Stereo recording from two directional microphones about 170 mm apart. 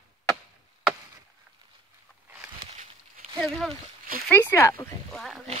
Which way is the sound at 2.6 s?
45° right (ahead or behind).